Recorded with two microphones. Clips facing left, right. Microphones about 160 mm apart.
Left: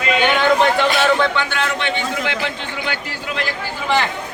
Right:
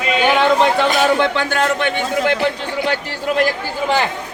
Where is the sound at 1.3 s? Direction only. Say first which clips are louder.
Right 4 dB; 40° right (ahead or behind).